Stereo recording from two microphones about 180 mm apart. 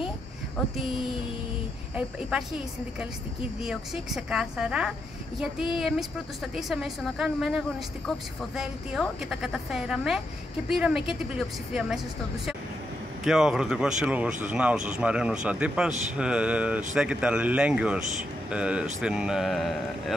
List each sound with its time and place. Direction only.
2.0 s speech: 5° right (ahead or behind)
3.6 s speech: 5° right (ahead or behind)
13.2 s speech: centre (ahead or behind)